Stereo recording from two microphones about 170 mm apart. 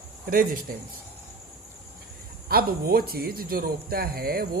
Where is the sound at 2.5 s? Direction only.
60° right (ahead or behind).